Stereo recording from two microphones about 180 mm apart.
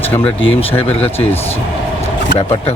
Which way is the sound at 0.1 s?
10° left (ahead or behind).